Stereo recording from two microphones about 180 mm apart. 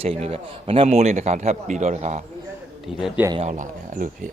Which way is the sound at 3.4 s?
45° right (ahead or behind).